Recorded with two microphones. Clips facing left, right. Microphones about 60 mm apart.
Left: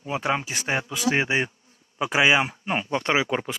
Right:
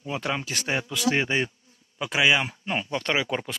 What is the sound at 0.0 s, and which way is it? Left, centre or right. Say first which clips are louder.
Speech: left 4 dB; left.